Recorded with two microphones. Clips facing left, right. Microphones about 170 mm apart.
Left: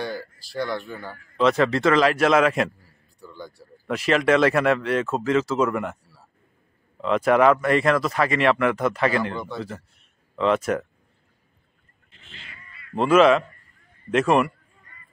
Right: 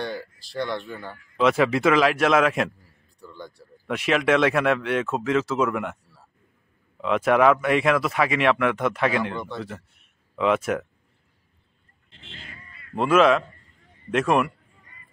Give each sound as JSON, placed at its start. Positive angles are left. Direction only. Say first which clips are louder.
{"t": 0.0, "sound": "speech", "louder": "left 1 dB", "side_deg": 0}
{"t": 7.0, "sound": "speech", "louder": "left 1 dB", "side_deg": 0}
{"t": 12.1, "sound": "goat", "louder": "right 4 dB", "side_deg": -30}
{"t": 12.4, "sound": "a sound", "louder": "right 1 dB", "side_deg": -40}
{"t": 12.9, "sound": "speech", "louder": "left 2 dB", "side_deg": 0}